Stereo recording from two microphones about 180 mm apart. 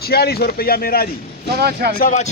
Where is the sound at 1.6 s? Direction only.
60° right (ahead or behind).